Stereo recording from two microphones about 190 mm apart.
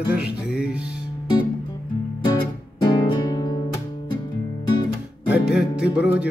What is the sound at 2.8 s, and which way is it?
Music, 25° left (ahead or behind).